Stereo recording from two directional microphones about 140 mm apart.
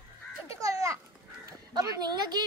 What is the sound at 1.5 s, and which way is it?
Speech, 25° right (ahead or behind).